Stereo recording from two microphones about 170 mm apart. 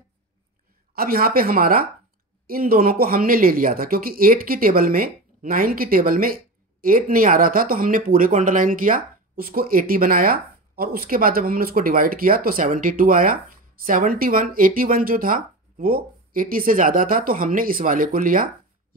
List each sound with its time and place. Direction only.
0.9 s speech: 60° right (ahead or behind)